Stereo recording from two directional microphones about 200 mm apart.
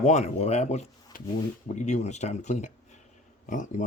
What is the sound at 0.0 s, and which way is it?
Speech, 35° left (ahead or behind).